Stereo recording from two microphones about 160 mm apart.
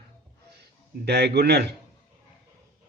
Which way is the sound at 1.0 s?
90° right.